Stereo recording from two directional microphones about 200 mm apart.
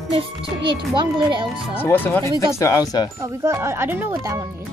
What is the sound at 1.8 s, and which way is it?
A child's voice, 10° left (ahead or behind).